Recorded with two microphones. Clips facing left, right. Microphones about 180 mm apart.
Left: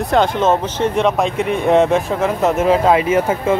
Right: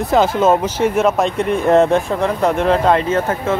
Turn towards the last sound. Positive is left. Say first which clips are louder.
# left 2 dB
turn(degrees=10)  # may be behind; listen again after turning